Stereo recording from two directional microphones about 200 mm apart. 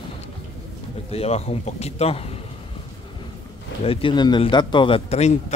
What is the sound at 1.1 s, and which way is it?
Speech, 30° left (ahead or behind).